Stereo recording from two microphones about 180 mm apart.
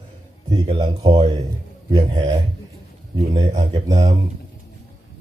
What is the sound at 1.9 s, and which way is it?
Speech, 30° right (ahead or behind).